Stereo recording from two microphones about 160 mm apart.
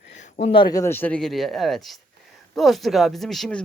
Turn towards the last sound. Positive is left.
turn(degrees=0)  # may be behind; listen again after turning